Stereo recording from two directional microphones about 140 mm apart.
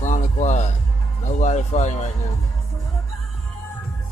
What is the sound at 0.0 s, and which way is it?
Music, 60° left (ahead or behind).